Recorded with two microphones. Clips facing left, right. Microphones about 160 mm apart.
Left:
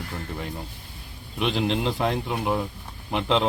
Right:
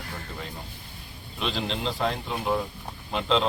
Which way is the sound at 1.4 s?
15° left (ahead or behind).